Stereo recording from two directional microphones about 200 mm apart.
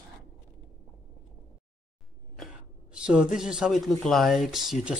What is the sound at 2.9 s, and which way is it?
Speech, 5° right (ahead or behind).